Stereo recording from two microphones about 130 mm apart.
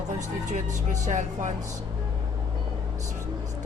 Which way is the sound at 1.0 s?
70° right (ahead or behind).